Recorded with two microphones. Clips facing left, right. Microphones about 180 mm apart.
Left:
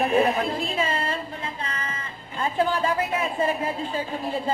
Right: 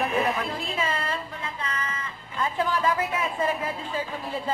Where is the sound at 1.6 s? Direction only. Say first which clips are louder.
Right 1 dB; 30° left (ahead or behind).